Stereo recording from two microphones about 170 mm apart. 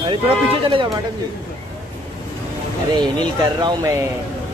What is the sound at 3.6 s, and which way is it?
Speech, 25° right (ahead or behind).